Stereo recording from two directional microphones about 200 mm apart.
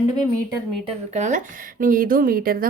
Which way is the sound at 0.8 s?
35° right (ahead or behind).